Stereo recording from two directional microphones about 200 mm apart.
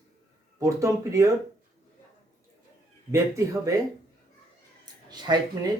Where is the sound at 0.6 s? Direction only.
15° right (ahead or behind).